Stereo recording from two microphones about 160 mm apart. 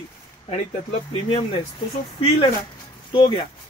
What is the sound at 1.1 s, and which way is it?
Speech, 35° left (ahead or behind).